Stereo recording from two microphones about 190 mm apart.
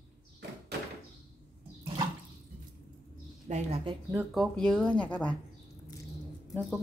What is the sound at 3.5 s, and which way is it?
Speech, 35° right (ahead or behind).